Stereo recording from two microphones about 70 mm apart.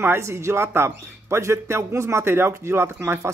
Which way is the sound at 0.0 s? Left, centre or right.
Right.